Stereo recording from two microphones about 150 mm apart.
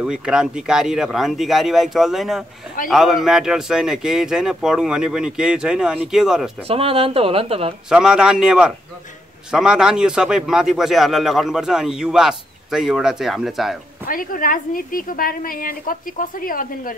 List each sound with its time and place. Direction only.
0.0 s a man's voice: 5° right (ahead or behind)
6.7 s a woman's voice: 40° right (ahead or behind)
7.9 s a man's voice: 5° right (ahead or behind)
14.0 s a woman's voice: 70° left (ahead or behind)